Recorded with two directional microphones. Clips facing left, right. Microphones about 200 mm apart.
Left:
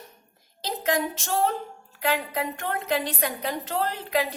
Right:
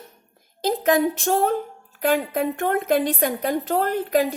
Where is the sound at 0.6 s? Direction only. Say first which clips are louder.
Right 7 dB; 50° right (ahead or behind).